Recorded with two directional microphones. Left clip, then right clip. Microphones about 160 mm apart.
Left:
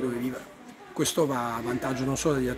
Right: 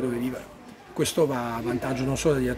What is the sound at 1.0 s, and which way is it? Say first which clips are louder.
A man's voice: right 2 dB; 5° right (ahead or behind).